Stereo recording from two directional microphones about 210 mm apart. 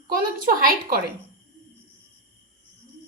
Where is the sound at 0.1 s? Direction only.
40° right (ahead or behind).